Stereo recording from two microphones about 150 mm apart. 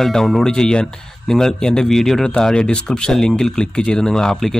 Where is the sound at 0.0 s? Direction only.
Centre (ahead or behind).